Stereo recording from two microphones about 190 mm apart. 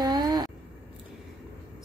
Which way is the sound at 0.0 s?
20° right (ahead or behind).